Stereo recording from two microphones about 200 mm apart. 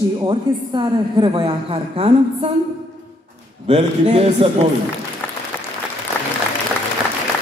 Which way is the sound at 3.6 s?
35° right (ahead or behind).